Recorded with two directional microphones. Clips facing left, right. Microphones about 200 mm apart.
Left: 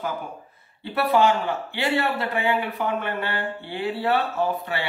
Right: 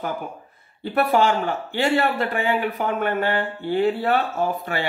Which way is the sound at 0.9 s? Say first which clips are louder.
Right 1 dB; 45° right (ahead or behind).